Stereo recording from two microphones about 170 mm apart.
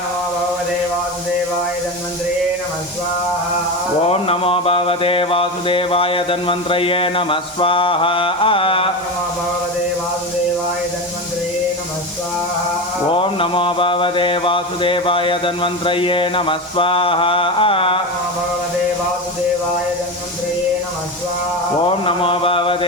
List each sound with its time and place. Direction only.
4.1 s mantra: 35° left (ahead or behind)
13.1 s mantra: 30° left (ahead or behind)
21.8 s mantra: 30° left (ahead or behind)